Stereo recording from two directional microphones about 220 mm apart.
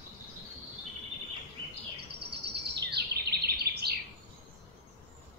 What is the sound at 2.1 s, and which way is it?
Bird vocalization, 50° right (ahead or behind).